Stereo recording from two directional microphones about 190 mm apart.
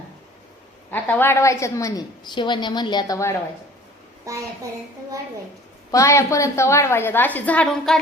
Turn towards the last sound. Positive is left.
turn(degrees=0)  # may be behind; listen again after turning